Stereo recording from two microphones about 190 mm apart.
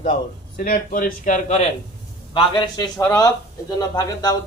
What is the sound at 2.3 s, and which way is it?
A man's voice, 25° left (ahead or behind).